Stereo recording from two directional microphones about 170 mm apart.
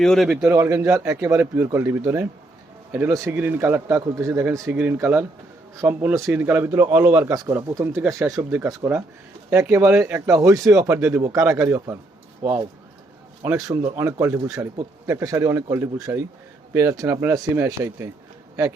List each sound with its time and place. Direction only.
0.0 s a man's voice: centre (ahead or behind)
0.5 s speech: 15° right (ahead or behind)
13.4 s speech: 20° right (ahead or behind)